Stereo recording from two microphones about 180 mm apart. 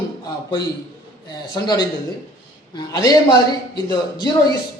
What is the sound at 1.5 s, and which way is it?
A man's voice, 25° left (ahead or behind).